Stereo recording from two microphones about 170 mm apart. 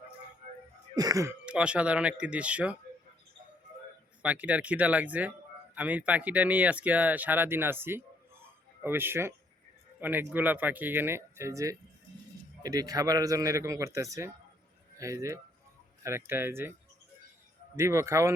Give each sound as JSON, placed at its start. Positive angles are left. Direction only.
{"t": 0.9, "sound": "speech", "side_deg": -20}
{"t": 1.5, "sound": "speech", "side_deg": -5}
{"t": 4.2, "sound": "speech", "side_deg": -10}
{"t": 17.7, "sound": "speech", "side_deg": -15}